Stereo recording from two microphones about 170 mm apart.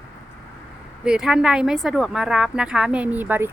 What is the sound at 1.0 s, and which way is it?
A woman's voice, 5° right (ahead or behind).